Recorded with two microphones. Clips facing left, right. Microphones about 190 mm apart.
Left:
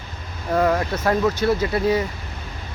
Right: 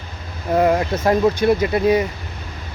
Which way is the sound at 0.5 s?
20° right (ahead or behind).